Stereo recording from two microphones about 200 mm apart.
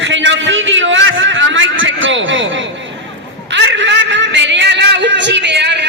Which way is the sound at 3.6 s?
60° right (ahead or behind).